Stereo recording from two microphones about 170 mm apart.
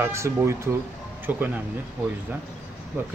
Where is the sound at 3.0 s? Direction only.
10° right (ahead or behind).